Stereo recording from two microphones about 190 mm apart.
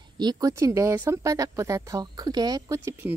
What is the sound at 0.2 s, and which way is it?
Speech, 20° right (ahead or behind).